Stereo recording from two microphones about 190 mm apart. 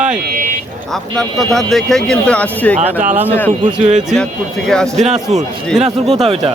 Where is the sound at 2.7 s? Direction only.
40° right (ahead or behind).